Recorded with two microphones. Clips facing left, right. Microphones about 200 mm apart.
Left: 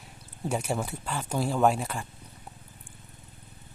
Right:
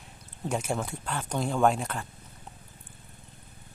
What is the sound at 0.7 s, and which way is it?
Speech, 5° left (ahead or behind).